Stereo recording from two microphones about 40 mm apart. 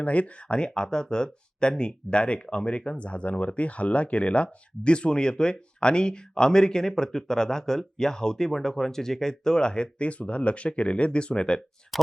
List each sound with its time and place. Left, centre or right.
0.0 s speech: left
0.5 s speech: left